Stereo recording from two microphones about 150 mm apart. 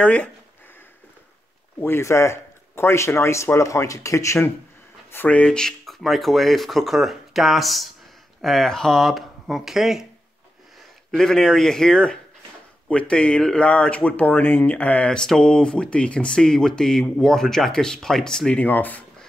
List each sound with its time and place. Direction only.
0.0 s speech: 5° left (ahead or behind)
1.8 s speech: 15° left (ahead or behind); by 10.0 s 5° right (ahead or behind)
11.1 s speech: 5° left (ahead or behind)